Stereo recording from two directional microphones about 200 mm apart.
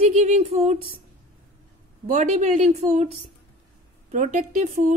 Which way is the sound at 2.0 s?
35° right (ahead or behind).